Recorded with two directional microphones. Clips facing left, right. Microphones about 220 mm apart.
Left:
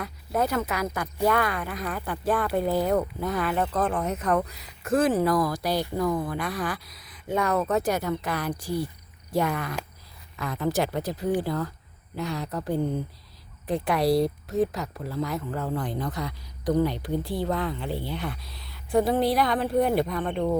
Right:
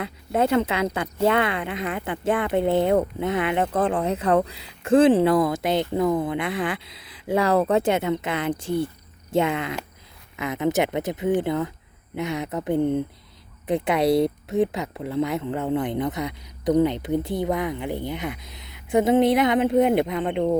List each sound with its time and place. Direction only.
0.0 s speech: 25° right (ahead or behind)